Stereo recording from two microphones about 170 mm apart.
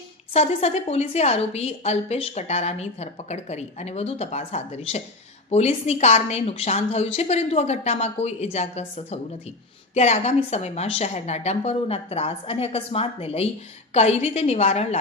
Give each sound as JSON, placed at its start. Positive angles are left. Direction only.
{"t": 0.3, "sound": "a woman's voice", "side_deg": 40}